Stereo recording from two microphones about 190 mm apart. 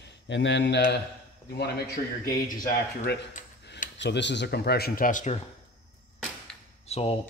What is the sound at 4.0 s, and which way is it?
Speech, 65° left (ahead or behind).